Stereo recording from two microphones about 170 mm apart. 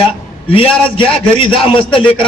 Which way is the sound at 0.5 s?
30° left (ahead or behind).